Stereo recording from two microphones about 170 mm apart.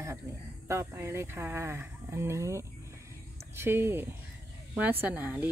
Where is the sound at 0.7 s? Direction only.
15° right (ahead or behind).